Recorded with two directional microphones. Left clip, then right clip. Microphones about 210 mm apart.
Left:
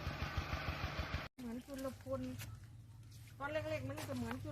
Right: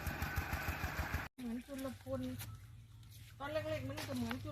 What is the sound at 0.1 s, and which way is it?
Vehicle, 35° left (ahead or behind).